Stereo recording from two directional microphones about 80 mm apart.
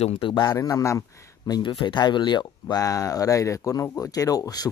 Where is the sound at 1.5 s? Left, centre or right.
Left.